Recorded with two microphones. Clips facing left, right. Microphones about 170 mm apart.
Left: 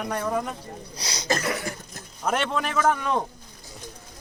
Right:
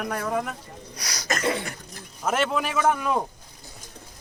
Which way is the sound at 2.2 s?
5° right (ahead or behind).